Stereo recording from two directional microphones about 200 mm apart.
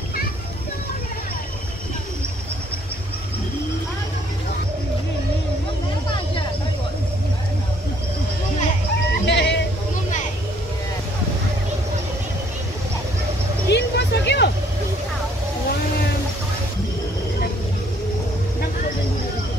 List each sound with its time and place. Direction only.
9.2 s sheep: 60° left (ahead or behind)
13.7 s vehicle: 60° left (ahead or behind)